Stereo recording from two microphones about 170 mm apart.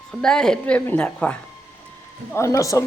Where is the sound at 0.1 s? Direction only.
5° left (ahead or behind).